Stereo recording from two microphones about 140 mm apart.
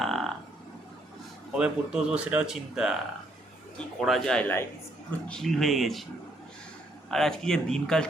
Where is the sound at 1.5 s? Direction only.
5° right (ahead or behind).